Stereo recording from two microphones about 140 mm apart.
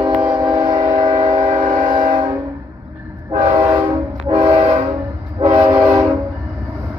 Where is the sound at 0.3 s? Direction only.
30° right (ahead or behind).